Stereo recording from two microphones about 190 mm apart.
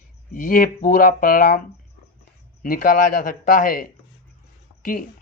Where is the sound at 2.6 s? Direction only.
45° left (ahead or behind).